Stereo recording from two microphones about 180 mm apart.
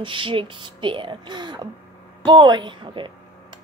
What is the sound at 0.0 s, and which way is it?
Speech, 30° right (ahead or behind).